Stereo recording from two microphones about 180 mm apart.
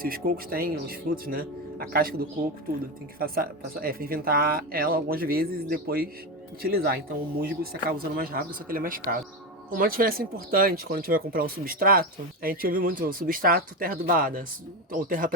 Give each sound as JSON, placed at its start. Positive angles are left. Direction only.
{"t": 0.0, "sound": "speech", "side_deg": -55}